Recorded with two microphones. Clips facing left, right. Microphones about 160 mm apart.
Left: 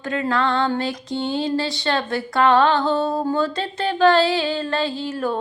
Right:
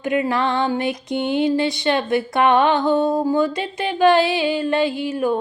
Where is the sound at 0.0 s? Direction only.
20° right (ahead or behind).